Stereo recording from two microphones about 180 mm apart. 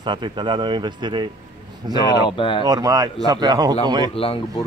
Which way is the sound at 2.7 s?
20° right (ahead or behind).